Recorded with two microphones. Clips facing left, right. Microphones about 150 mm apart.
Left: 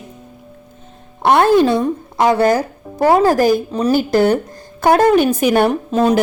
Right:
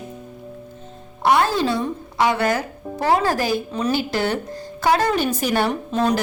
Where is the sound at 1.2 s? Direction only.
55° left (ahead or behind).